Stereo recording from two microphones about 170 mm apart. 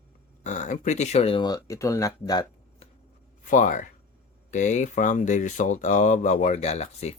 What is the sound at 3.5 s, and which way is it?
Speech, 50° left (ahead or behind).